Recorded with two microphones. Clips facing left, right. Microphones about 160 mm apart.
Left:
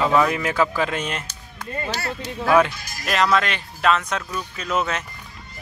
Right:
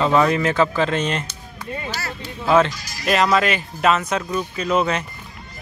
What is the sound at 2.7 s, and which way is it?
Speech, 50° left (ahead or behind).